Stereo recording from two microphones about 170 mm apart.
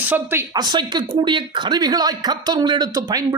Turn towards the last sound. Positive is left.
turn(degrees=-20)  # may be behind; listen again after turning